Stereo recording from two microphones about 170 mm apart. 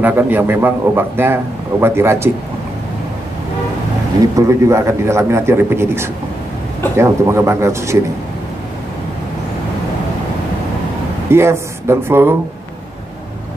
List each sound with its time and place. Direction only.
0.0 s a man's voice: 10° right (ahead or behind)
4.4 s a man's voice: 15° right (ahead or behind)
11.2 s speech: 15° right (ahead or behind)